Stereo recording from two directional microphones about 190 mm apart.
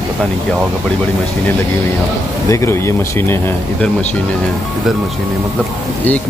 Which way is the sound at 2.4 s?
15° left (ahead or behind).